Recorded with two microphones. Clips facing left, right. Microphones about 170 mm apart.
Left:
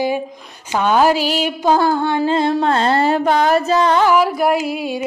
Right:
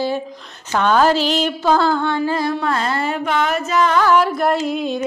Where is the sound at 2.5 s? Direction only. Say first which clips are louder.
Left 5 dB; 30° left (ahead or behind).